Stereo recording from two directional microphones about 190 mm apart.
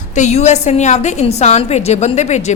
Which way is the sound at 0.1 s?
40° left (ahead or behind).